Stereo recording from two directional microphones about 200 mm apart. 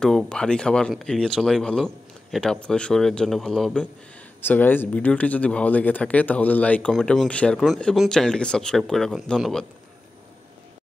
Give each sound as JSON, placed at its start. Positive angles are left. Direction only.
{"t": 0.0, "sound": "speech", "side_deg": 5}